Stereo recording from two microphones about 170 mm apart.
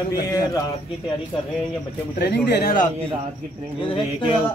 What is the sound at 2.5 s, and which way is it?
Speech, 65° left (ahead or behind).